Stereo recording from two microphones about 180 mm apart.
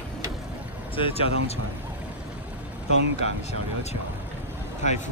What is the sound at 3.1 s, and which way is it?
Speech, 35° left (ahead or behind).